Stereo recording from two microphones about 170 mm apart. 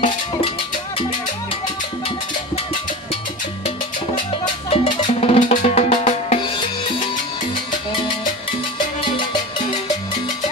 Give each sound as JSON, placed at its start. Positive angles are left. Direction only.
{"t": 4.6, "sound": "music", "side_deg": 35}